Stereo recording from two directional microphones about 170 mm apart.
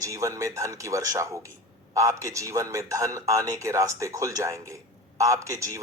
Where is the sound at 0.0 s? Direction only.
20° right (ahead or behind).